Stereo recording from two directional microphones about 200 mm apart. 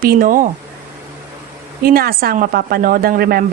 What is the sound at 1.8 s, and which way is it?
A woman's voice, 50° right (ahead or behind).